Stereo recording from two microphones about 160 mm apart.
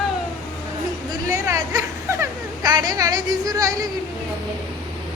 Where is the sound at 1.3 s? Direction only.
20° right (ahead or behind).